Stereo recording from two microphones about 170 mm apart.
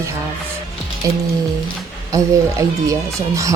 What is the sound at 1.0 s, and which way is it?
Speech, 20° right (ahead or behind).